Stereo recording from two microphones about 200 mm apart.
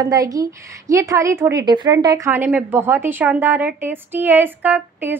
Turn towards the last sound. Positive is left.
turn(degrees=-10)  # may be behind; listen again after turning